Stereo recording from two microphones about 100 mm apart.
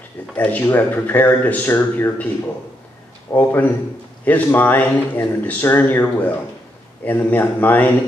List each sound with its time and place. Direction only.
0.7 s a man's voice: 25° left (ahead or behind)